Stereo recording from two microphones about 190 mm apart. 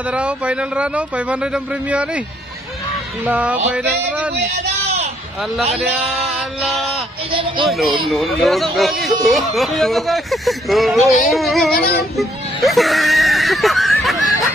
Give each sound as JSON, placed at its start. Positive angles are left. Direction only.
{"t": 0.0, "sound": "a man's voice", "side_deg": -5}
{"t": 3.3, "sound": "a man's voice", "side_deg": -10}
{"t": 6.1, "sound": "speech", "side_deg": 0}
{"t": 7.2, "sound": "speech", "side_deg": -25}
{"t": 7.6, "sound": "speech", "side_deg": 0}
{"t": 12.0, "sound": "a sound", "side_deg": 0}